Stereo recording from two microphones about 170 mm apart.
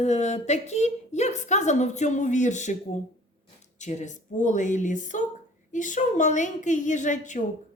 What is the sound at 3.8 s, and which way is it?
A woman's voice, 45° left (ahead or behind).